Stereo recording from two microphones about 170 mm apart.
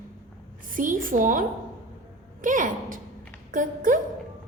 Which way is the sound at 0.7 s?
50° right (ahead or behind).